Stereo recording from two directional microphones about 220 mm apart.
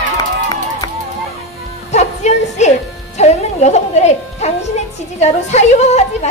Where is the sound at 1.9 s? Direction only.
30° left (ahead or behind).